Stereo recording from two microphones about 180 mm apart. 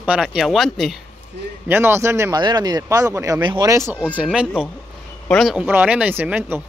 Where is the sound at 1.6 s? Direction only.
10° right (ahead or behind).